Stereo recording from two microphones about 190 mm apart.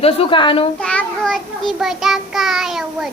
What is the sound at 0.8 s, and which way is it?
Child singing, 5° left (ahead or behind).